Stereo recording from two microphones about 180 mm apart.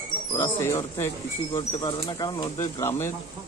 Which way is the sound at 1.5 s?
25° left (ahead or behind).